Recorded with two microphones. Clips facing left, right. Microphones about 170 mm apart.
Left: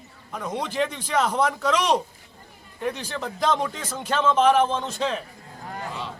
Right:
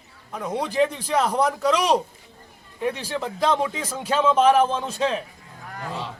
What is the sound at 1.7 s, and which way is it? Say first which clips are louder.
Speech: even; 35° right (ahead or behind).